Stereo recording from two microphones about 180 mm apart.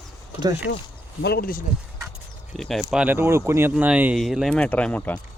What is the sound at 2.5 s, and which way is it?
Speech, centre (ahead or behind).